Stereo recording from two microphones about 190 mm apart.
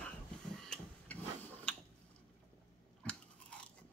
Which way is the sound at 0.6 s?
5° left (ahead or behind).